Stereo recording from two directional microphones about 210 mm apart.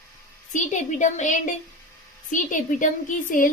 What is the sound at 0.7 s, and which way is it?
A woman's voice, 35° left (ahead or behind).